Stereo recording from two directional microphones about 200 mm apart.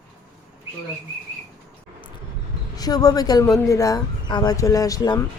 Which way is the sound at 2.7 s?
20° left (ahead or behind).